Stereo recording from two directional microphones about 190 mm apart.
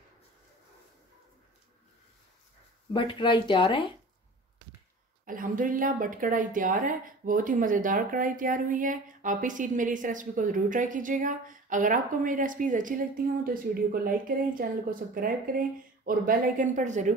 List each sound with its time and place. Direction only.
2.9 s speech: 25° left (ahead or behind)
5.2 s speech: 45° right (ahead or behind)